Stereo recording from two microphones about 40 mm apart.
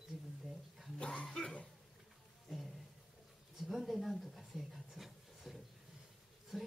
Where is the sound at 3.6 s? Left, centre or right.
Centre.